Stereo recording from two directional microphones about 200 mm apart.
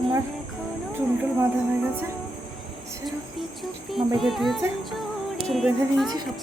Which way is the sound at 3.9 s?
Centre (ahead or behind).